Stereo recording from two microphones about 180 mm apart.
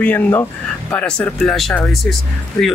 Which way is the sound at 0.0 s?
10° left (ahead or behind).